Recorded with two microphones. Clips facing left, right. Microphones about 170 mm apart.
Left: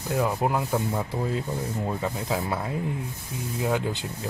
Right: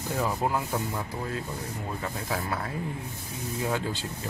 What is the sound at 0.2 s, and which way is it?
Speech, 15° left (ahead or behind).